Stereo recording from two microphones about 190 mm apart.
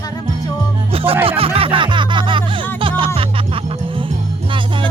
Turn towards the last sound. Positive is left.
turn(degrees=-25)  # may be behind; listen again after turning